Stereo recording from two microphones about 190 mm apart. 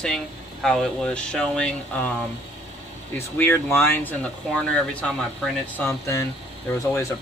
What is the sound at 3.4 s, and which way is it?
Speech, 10° left (ahead or behind).